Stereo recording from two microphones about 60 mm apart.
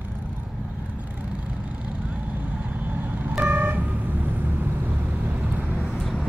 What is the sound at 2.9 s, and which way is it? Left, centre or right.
Vehicle, right.